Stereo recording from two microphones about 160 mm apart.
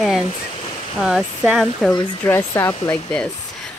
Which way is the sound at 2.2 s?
15° left (ahead or behind).